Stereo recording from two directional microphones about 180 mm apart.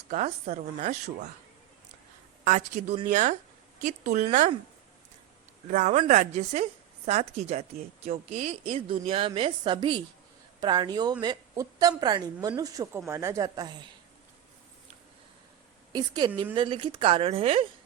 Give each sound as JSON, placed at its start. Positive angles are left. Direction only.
{"t": 0.1, "sound": "a woman's voice", "side_deg": -40}
{"t": 2.4, "sound": "a woman's voice", "side_deg": -45}
{"t": 5.6, "sound": "a woman's voice", "side_deg": -45}
{"t": 15.9, "sound": "a woman's voice", "side_deg": -20}